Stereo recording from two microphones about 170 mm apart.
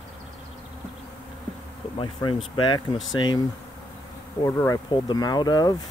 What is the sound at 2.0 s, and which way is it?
Speech, 30° left (ahead or behind).